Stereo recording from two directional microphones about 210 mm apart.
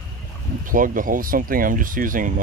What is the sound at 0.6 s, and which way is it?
Speech, 40° right (ahead or behind).